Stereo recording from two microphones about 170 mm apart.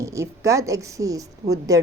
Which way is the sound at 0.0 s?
15° right (ahead or behind).